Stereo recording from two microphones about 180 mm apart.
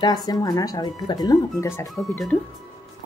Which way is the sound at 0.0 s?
20° left (ahead or behind).